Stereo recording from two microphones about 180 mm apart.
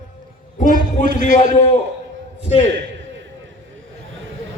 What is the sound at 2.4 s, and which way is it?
Speech, 35° left (ahead or behind).